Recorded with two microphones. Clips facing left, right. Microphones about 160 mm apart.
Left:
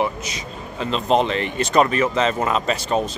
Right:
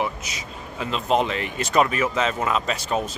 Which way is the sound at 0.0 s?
5° right (ahead or behind).